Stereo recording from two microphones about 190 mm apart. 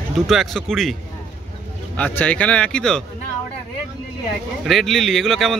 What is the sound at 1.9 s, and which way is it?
Speech, 10° left (ahead or behind).